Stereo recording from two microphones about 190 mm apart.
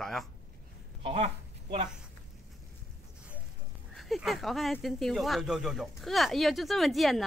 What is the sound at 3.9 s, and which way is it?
Speech, centre (ahead or behind).